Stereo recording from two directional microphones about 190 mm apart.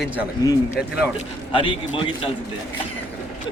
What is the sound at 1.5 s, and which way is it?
Speech, 25° left (ahead or behind).